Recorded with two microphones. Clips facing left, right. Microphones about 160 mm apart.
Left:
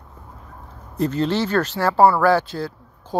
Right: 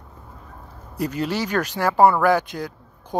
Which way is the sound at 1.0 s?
10° right (ahead or behind).